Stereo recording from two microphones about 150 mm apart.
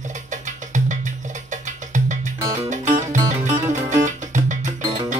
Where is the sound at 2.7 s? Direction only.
55° right (ahead or behind).